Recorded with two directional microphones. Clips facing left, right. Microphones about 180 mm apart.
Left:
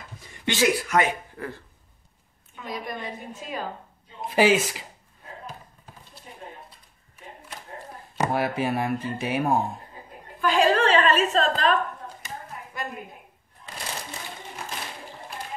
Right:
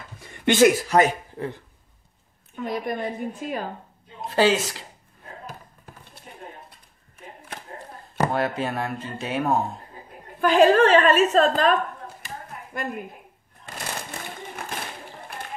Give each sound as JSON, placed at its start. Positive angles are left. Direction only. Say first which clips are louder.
{"t": 0.5, "sound": "a woman's voice", "louder": "right 6 dB", "side_deg": -50}
{"t": 0.8, "sound": "speech", "louder": "right 4 dB", "side_deg": -35}
{"t": 2.5, "sound": "a woman's voice", "louder": "right 6 dB", "side_deg": -50}
{"t": 4.3, "sound": "speech", "louder": "even", "side_deg": 15}
{"t": 8.3, "sound": "speech", "louder": "even", "side_deg": 10}
{"t": 10.4, "sound": "a woman's voice", "louder": "right 5 dB", "side_deg": -50}
{"t": 13.7, "sound": "a sound", "louder": "right 2 dB", "side_deg": -50}